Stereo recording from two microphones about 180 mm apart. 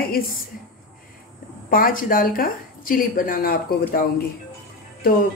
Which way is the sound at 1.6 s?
55° left (ahead or behind).